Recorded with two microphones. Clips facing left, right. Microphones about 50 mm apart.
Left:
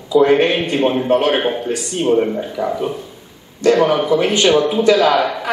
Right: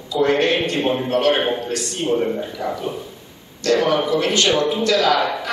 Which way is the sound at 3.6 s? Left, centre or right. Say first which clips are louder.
Left 4 dB; centre.